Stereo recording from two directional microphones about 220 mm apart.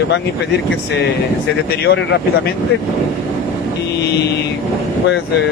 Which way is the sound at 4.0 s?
50° left (ahead or behind).